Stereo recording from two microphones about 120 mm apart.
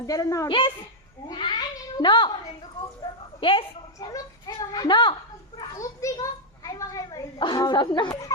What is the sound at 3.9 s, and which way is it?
A child's voice, 30° left (ahead or behind).